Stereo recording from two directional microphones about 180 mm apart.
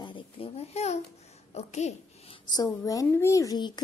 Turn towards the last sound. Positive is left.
turn(degrees=25)  # may be behind; listen again after turning